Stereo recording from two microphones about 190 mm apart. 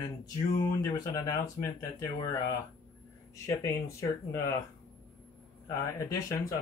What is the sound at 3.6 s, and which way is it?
Speech, 15° left (ahead or behind).